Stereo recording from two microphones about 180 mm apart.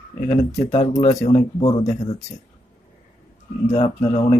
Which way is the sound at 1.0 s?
40° left (ahead or behind).